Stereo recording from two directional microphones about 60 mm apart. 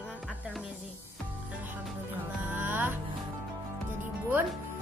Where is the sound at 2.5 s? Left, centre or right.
Right.